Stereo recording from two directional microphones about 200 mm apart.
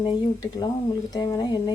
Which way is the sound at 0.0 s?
20° left (ahead or behind).